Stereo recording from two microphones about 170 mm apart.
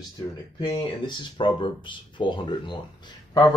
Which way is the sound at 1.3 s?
30° left (ahead or behind).